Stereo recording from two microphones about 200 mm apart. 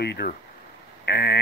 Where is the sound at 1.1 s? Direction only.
55° left (ahead or behind).